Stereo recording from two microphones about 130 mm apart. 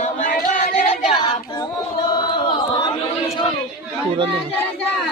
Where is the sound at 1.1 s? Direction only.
35° left (ahead or behind).